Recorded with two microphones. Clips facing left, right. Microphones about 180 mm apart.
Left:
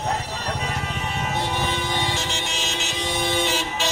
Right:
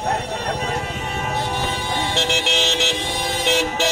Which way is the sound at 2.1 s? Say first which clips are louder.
Right 6 dB; 75° right (ahead or behind).